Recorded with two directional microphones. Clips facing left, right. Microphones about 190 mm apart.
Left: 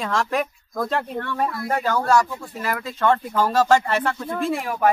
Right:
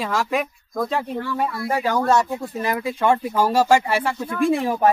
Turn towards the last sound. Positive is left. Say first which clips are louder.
# right 4 dB
turn(degrees=-25)  # may be behind; listen again after turning